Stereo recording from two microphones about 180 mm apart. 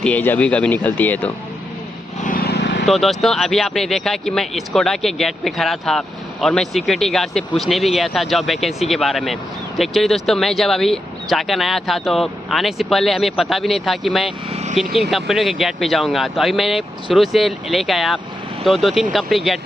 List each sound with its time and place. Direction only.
0.0 s speech: 10° left (ahead or behind)
2.2 s vehicle: 55° left (ahead or behind)
2.8 s speech: centre (ahead or behind)
14.5 s speech: 40° right (ahead or behind)
14.8 s speech: centre (ahead or behind)